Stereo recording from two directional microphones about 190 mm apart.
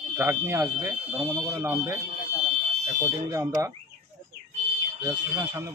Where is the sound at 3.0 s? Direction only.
15° right (ahead or behind).